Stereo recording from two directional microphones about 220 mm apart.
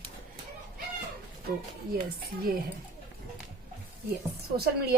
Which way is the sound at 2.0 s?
40° right (ahead or behind).